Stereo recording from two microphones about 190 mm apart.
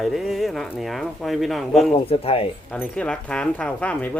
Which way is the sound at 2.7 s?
5° left (ahead or behind).